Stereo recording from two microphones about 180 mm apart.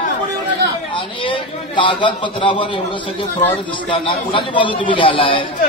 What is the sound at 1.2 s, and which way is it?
A man's voice, 25° left (ahead or behind).